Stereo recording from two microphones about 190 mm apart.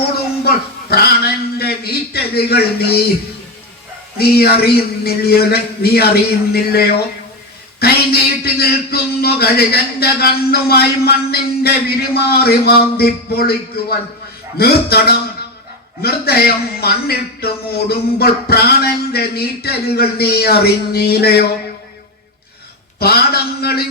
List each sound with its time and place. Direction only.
0.4 s a man's voice: 55° left (ahead or behind)
4.2 s a man's voice: 55° left (ahead or behind)
23.0 s a man's voice: 55° left (ahead or behind)